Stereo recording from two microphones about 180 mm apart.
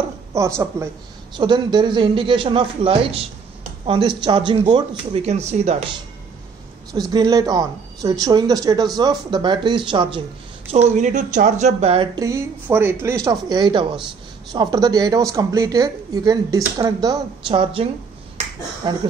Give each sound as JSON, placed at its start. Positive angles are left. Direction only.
{"t": 0.3, "sound": "speech", "side_deg": -15}
{"t": 1.3, "sound": "a woman's voice", "side_deg": -25}
{"t": 6.9, "sound": "speech", "side_deg": -20}
{"t": 10.7, "sound": "a woman's voice", "side_deg": -40}
{"t": 12.2, "sound": "speech", "side_deg": -15}
{"t": 18.8, "sound": "speech", "side_deg": -25}